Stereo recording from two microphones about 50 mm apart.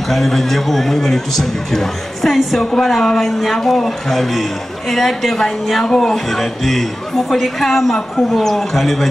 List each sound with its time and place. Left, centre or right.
0.1 s speech: centre